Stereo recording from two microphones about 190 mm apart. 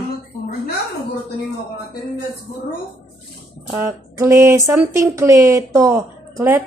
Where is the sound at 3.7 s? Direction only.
15° right (ahead or behind).